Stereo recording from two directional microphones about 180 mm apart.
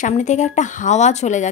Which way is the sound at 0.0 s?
40° left (ahead or behind).